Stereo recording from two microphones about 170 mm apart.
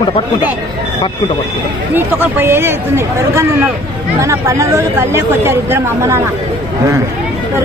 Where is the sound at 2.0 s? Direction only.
10° right (ahead or behind).